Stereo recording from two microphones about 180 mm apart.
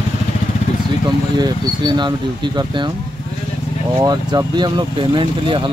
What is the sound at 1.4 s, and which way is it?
Speech, 25° right (ahead or behind).